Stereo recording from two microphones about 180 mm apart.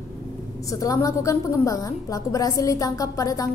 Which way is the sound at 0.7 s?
20° left (ahead or behind).